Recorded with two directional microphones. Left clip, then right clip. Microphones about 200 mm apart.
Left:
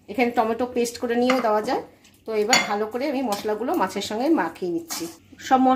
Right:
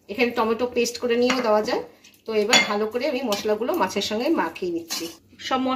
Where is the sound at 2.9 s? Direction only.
60° left (ahead or behind).